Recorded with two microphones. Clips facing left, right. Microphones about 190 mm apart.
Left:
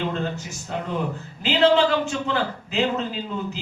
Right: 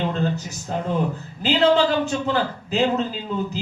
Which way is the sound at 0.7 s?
40° right (ahead or behind).